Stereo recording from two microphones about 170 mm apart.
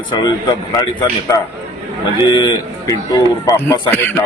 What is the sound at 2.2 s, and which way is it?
A man's voice, 25° left (ahead or behind).